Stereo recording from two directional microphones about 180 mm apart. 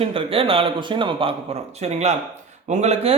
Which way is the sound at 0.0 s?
30° right (ahead or behind).